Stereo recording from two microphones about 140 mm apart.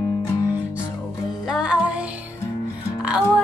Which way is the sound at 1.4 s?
5° right (ahead or behind).